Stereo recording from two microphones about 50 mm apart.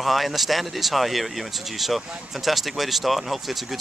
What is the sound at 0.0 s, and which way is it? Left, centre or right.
Speech, centre.